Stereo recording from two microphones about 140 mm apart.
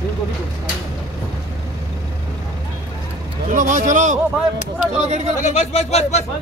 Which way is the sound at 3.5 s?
65° right (ahead or behind).